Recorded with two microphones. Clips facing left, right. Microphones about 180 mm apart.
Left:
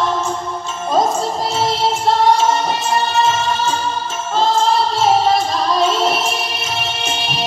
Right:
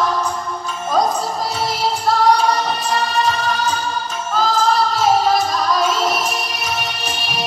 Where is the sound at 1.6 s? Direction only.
25° left (ahead or behind).